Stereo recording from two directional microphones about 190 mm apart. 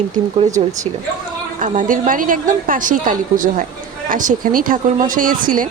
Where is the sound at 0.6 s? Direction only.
30° right (ahead or behind).